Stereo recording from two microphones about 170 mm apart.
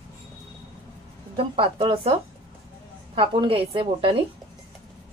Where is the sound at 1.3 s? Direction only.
30° right (ahead or behind).